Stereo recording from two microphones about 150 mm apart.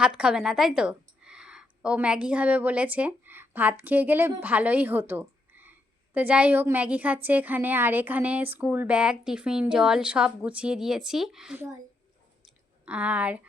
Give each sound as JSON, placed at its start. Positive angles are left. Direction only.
{"t": 0.0, "sound": "a woman's voice", "side_deg": -5}
{"t": 11.5, "sound": "a woman's voice", "side_deg": -15}
{"t": 12.8, "sound": "a woman's voice", "side_deg": -10}